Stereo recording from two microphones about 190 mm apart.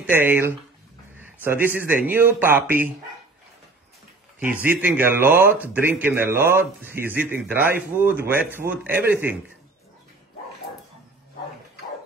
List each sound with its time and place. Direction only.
0.0 s speech: 10° right (ahead or behind)
4.4 s speech: 10° right (ahead or behind)
8.9 s a man's voice: 55° right (ahead or behind)